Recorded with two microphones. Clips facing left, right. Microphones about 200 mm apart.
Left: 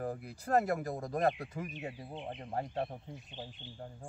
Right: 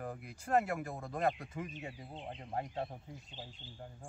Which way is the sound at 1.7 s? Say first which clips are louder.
Left 4 dB; 60° left (ahead or behind).